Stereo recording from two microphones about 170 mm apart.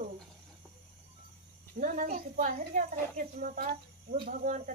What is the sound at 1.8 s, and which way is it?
Speech, 50° right (ahead or behind).